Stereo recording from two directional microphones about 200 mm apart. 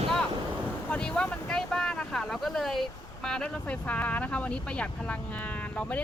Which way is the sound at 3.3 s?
5° left (ahead or behind).